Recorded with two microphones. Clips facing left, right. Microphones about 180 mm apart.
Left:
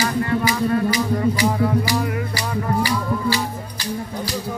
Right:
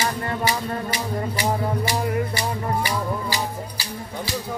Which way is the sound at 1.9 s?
25° right (ahead or behind).